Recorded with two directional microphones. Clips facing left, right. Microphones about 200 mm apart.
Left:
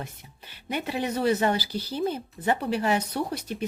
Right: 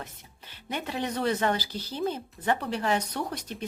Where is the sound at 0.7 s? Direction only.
10° left (ahead or behind).